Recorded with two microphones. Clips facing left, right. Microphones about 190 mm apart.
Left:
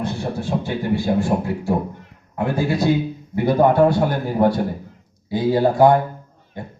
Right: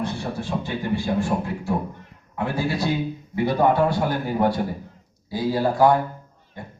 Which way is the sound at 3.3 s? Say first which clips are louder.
Left 4 dB; 50° left (ahead or behind).